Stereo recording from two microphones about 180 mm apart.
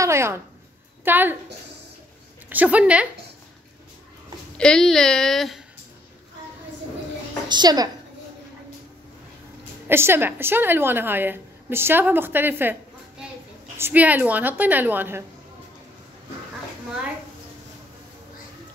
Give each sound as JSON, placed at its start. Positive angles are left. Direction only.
{"t": 0.0, "sound": "a woman's voice", "side_deg": -15}
{"t": 2.5, "sound": "a woman's voice", "side_deg": -10}
{"t": 4.6, "sound": "speech", "side_deg": 5}
{"t": 7.4, "sound": "a woman's voice", "side_deg": -25}
{"t": 9.8, "sound": "a woman's voice", "side_deg": -15}
{"t": 13.7, "sound": "a woman's voice", "side_deg": -10}